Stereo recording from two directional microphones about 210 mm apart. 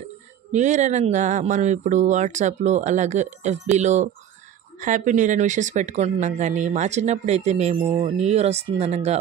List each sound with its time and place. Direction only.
0.5 s speech: 35° right (ahead or behind)